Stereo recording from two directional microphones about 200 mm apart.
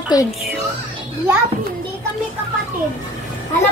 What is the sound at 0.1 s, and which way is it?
Speech, 20° left (ahead or behind).